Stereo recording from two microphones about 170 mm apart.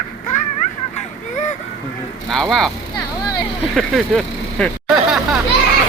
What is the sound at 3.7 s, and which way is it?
Speech, 5° left (ahead or behind).